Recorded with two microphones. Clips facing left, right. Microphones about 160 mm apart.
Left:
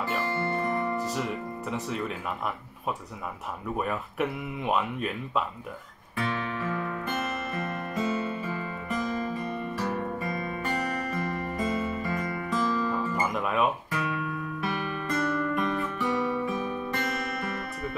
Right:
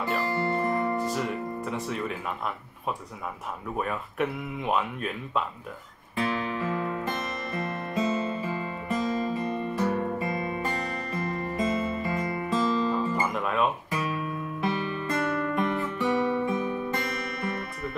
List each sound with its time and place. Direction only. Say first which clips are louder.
0.4 s music: right 3 dB; 15° right (ahead or behind)
0.9 s speech: right 2 dB; centre (ahead or behind)
3.7 s speech: even; centre (ahead or behind)
6.1 s music: right 2 dB; 20° right (ahead or behind)
13.2 s music: even; centre (ahead or behind)
14.6 s music: right 4 dB; 25° right (ahead or behind)